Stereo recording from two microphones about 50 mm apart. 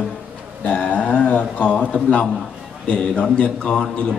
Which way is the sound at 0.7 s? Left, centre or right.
Left.